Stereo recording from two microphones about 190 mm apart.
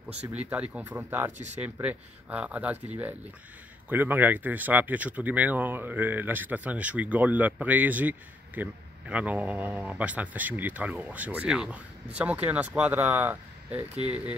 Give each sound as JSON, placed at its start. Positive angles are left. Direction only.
{"t": 0.3, "sound": "speech", "side_deg": -10}